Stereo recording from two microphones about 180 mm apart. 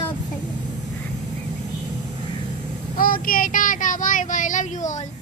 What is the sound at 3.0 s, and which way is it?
Speech, 50° left (ahead or behind).